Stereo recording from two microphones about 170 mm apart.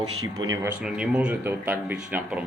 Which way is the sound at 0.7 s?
5° right (ahead or behind).